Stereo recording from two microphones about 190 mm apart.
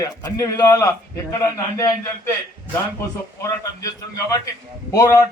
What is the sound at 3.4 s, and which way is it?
A man's voice, 20° left (ahead or behind).